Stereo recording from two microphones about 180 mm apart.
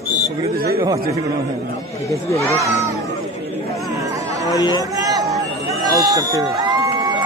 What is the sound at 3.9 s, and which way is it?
Chatter, 20° right (ahead or behind).